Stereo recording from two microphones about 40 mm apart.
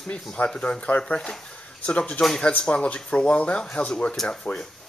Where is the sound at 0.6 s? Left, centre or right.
Left.